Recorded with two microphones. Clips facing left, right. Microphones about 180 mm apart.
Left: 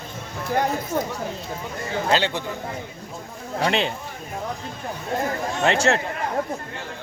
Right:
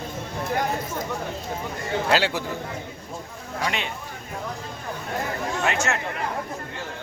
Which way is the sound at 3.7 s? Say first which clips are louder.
Left 8 dB; 30° left (ahead or behind).